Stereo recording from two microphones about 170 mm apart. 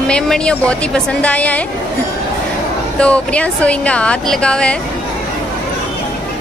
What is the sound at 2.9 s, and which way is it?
Speech, 5° left (ahead or behind).